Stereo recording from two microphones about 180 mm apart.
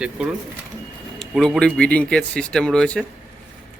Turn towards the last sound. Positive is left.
turn(degrees=5)  # may be behind; listen again after turning